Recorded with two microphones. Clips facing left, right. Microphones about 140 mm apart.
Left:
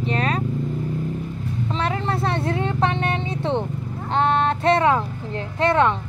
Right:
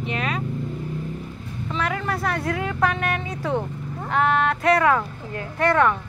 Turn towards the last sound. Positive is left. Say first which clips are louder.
# left 1 dB
turn(degrees=20)  # may be behind; listen again after turning